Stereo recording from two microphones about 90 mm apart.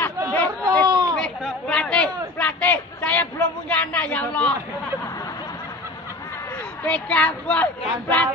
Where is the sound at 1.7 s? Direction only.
10° left (ahead or behind).